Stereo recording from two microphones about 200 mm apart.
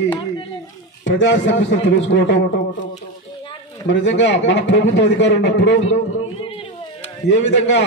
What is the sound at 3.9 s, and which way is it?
A man's voice, 60° left (ahead or behind).